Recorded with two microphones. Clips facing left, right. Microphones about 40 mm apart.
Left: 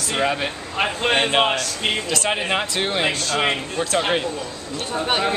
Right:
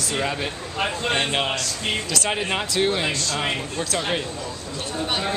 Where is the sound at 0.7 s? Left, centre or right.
Left.